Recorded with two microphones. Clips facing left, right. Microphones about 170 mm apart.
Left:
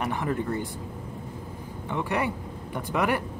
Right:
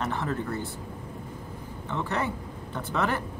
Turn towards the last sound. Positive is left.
turn(degrees=15)  # may be behind; listen again after turning